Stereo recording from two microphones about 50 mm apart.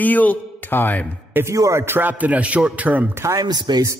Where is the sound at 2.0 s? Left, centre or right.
Right.